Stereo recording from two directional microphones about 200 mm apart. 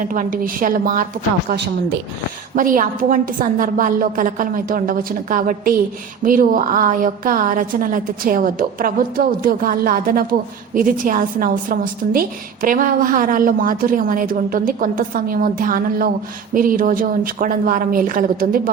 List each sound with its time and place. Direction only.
0.1 s a woman's voice: 45° right (ahead or behind)
2.6 s a woman's voice: 45° right (ahead or behind)